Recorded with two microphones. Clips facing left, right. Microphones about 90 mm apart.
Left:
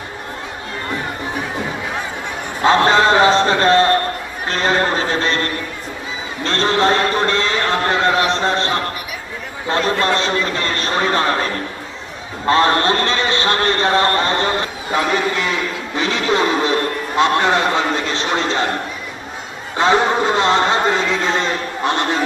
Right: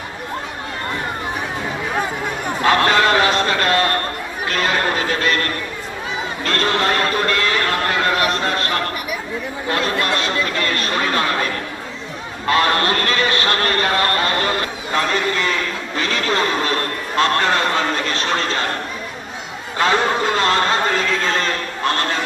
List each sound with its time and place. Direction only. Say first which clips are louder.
2.6 s a sound: left 3 dB; 25° left (ahead or behind)
9.6 s a man's voice: left 4 dB; 30° left (ahead or behind)
12.5 s a man's voice: left 3 dB; 30° left (ahead or behind); by 15.5 s 15° left (ahead or behind)
16.0 s a sound: left 3 dB; 20° left (ahead or behind)
17.2 s a man's voice: left 2 dB; 15° left (ahead or behind)
19.8 s a man's voice: left 3 dB; 20° left (ahead or behind)